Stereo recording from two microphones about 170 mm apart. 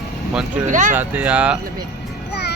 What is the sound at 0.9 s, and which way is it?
Speech, 10° right (ahead or behind).